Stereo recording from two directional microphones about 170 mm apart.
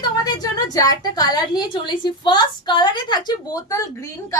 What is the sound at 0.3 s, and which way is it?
A woman's voice, 20° left (ahead or behind).